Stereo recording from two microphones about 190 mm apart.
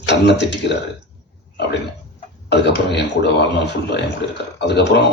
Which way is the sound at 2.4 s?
65° left (ahead or behind).